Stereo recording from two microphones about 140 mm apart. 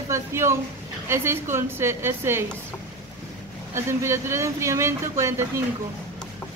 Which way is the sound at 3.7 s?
20° right (ahead or behind).